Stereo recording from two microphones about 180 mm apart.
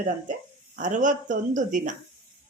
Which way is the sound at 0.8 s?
45° right (ahead or behind).